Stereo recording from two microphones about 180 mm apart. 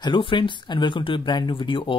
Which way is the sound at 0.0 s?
25° left (ahead or behind).